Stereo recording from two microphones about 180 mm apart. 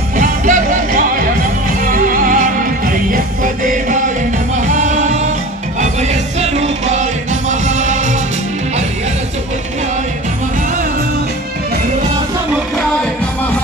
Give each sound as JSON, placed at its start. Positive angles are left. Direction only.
{"t": 0.1, "sound": "music", "side_deg": -45}
{"t": 1.9, "sound": "music", "side_deg": -50}
{"t": 4.6, "sound": "music", "side_deg": -40}